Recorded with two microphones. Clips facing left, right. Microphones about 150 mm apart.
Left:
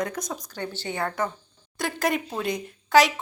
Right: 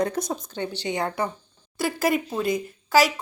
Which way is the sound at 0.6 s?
15° right (ahead or behind).